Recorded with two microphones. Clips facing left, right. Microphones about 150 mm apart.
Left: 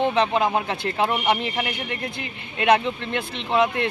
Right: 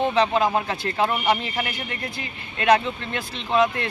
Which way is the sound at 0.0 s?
15° left (ahead or behind).